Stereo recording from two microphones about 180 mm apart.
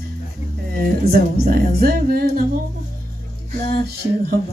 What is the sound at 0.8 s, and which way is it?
Speech, 60° right (ahead or behind).